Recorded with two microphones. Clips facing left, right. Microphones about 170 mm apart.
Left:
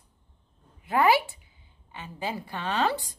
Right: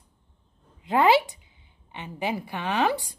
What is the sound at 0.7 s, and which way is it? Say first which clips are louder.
A woman's voice: right 2 dB; 20° right (ahead or behind).